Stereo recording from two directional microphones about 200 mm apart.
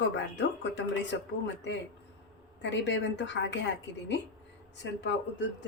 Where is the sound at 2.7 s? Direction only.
60° left (ahead or behind).